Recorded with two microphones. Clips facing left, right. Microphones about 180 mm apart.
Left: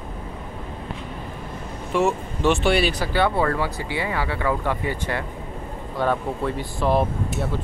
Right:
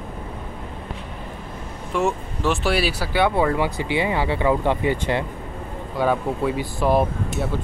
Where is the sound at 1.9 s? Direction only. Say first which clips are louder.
Left 1 dB; centre (ahead or behind); by 5.3 s 20° right (ahead or behind).